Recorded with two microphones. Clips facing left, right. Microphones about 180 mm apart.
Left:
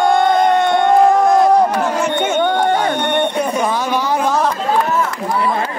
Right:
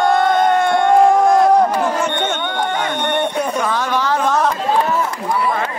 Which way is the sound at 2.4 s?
40° left (ahead or behind).